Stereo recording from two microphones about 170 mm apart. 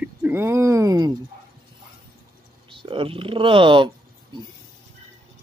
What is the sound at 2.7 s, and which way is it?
Speech, 30° right (ahead or behind).